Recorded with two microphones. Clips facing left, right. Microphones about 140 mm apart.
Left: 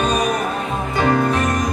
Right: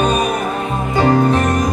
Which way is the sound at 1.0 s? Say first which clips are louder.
Right 4 dB; 30° right (ahead or behind).